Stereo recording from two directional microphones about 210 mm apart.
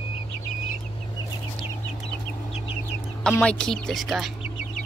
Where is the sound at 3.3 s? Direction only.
5° left (ahead or behind).